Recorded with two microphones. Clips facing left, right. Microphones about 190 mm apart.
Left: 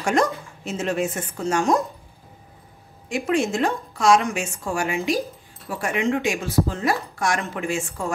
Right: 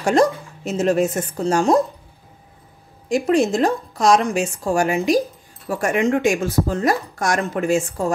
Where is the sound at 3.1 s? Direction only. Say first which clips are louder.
Right 5 dB; 35° right (ahead or behind).